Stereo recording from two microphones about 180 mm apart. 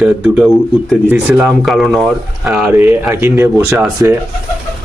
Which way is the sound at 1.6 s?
Centre (ahead or behind).